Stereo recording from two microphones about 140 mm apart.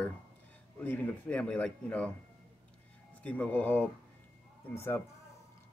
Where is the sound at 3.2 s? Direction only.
10° left (ahead or behind).